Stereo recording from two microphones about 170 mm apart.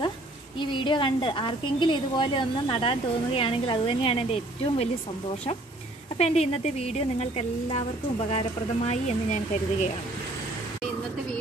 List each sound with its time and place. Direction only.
0.6 s a woman's voice: 30° left (ahead or behind)
6.1 s a woman's voice: 40° left (ahead or behind)